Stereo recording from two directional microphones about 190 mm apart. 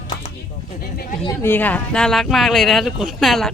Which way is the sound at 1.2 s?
10° left (ahead or behind).